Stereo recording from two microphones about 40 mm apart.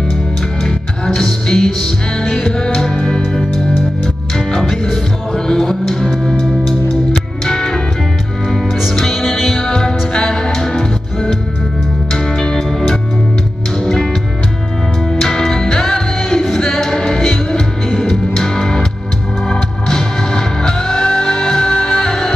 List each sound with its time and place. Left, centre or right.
0.7 s music: centre
4.6 s music: centre
7.4 s music: centre
8.9 s music: centre
12.1 s music: centre
15.0 s music: centre